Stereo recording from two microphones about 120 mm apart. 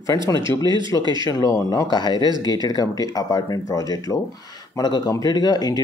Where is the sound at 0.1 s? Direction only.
30° left (ahead or behind).